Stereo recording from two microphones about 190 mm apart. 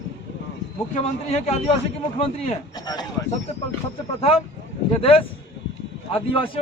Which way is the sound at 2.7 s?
20° left (ahead or behind).